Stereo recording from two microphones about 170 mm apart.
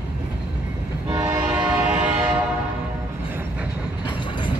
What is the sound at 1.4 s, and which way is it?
Train, 5° right (ahead or behind).